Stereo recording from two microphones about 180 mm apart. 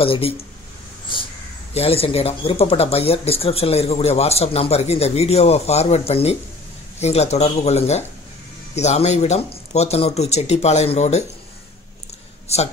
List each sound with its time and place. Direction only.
0.0 s speech: 30° left (ahead or behind)
1.1 s crow: 25° left (ahead or behind)
1.7 s speech: 35° left (ahead or behind)